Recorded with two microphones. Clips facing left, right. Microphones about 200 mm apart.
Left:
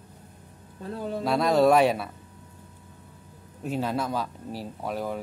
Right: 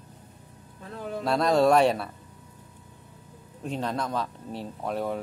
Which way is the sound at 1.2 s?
5° left (ahead or behind).